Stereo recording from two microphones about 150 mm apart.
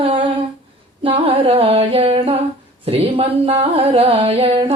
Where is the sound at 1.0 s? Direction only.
40° right (ahead or behind).